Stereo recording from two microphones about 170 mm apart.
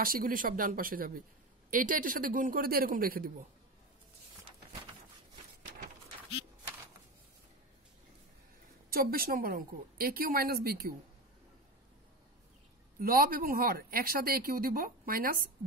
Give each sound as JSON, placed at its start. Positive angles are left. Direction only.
{"t": 0.0, "sound": "speech", "side_deg": -55}
{"t": 8.9, "sound": "speech", "side_deg": -60}
{"t": 13.0, "sound": "speech", "side_deg": -60}